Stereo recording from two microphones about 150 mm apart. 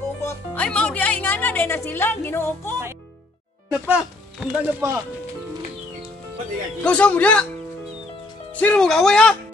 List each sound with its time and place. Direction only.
0.2 s music: 15° left (ahead or behind)
0.7 s a woman's voice: 10° left (ahead or behind)
3.8 s speech: 10° right (ahead or behind)
6.8 s a woman's voice: 10° left (ahead or behind)
8.5 s speech: 5° left (ahead or behind)